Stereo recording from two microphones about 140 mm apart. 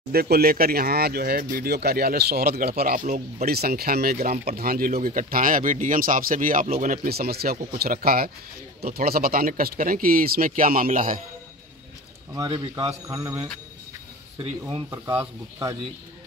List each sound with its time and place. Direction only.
0.1 s speech: 90° right; by 11.1 s 75° right (ahead or behind)
12.4 s a man's voice: 30° right (ahead or behind)